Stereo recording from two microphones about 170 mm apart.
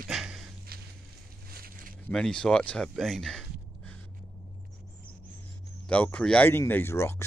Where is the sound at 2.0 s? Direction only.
10° left (ahead or behind).